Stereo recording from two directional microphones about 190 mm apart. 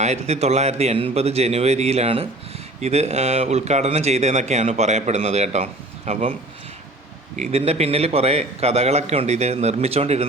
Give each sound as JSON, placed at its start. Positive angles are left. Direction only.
{"t": 0.0, "sound": "a man's voice", "side_deg": -35}
{"t": 7.3, "sound": "a man's voice", "side_deg": -35}